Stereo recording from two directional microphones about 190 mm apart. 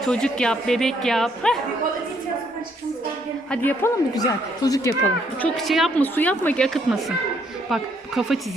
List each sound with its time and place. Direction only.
0.0 s speech: 5° left (ahead or behind)
3.5 s a woman's voice: 10° left (ahead or behind)
5.4 s a woman's voice: centre (ahead or behind)
6.9 s speech: 5° right (ahead or behind)